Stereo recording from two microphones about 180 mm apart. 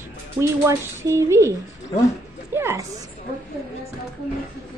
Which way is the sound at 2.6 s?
15° right (ahead or behind).